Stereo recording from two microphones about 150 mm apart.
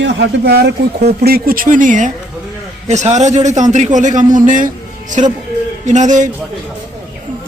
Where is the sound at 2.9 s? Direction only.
50° right (ahead or behind).